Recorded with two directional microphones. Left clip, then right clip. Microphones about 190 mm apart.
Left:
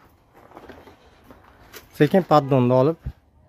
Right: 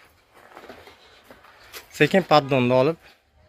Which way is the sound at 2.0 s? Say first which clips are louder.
Even; 25° left (ahead or behind).